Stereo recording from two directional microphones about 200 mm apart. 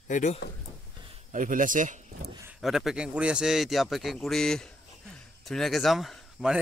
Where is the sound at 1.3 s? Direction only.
40° right (ahead or behind).